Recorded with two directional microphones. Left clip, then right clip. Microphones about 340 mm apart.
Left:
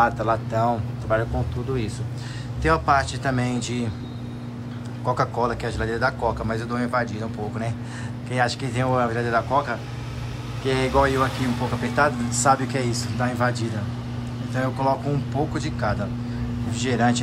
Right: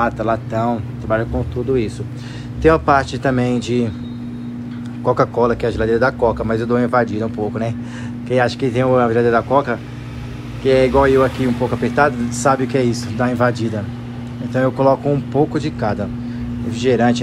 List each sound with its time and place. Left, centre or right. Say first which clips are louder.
0.0 s a man's voice: right 2 dB; centre
2.6 s a man's voice: right 7 dB; centre
5.0 s a man's voice: right 8 dB; centre